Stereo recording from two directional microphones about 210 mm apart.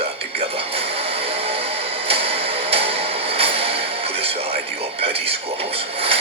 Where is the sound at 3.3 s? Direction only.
30° right (ahead or behind).